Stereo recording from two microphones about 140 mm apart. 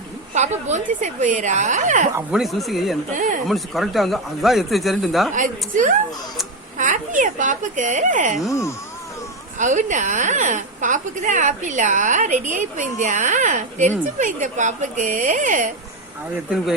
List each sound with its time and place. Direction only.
0.3 s a woman's voice: 55° right (ahead or behind)
2.3 s speech: centre (ahead or behind)
3.2 s speech: 70° right (ahead or behind)
3.4 s speech: centre (ahead or behind)
5.3 s a woman's voice: 65° right (ahead or behind)
8.4 s speech: 20° left (ahead or behind)
9.6 s a woman's voice: 60° right (ahead or behind)